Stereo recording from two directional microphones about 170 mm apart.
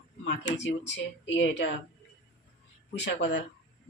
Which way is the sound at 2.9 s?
90° left.